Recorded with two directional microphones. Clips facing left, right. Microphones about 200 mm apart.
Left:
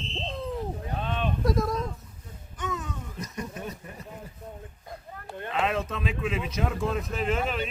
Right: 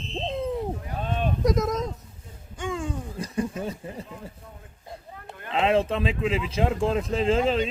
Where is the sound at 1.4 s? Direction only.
20° right (ahead or behind).